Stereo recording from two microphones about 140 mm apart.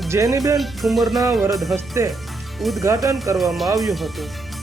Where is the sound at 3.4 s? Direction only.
Centre (ahead or behind).